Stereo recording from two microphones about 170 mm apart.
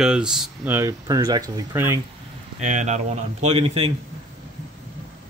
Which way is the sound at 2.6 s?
45° right (ahead or behind).